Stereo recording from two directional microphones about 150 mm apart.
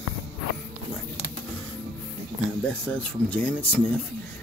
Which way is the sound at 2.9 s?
10° left (ahead or behind).